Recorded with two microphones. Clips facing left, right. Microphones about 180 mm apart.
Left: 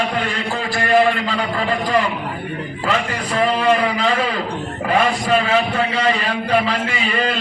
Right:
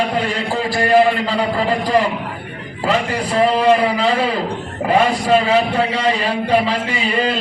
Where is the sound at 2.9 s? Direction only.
35° right (ahead or behind).